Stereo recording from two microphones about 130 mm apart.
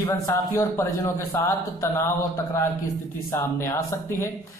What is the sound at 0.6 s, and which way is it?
A man's voice, 25° left (ahead or behind).